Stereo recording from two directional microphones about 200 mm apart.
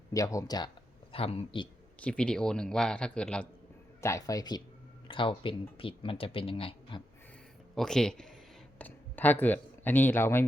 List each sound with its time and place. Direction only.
0.1 s speech: 15° left (ahead or behind)
2.0 s a man's voice: 5° left (ahead or behind)
4.0 s speech: 15° left (ahead or behind)
7.8 s a man's voice: 5° left (ahead or behind)